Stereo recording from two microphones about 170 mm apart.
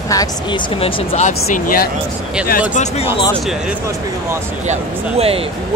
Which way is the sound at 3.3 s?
Centre (ahead or behind).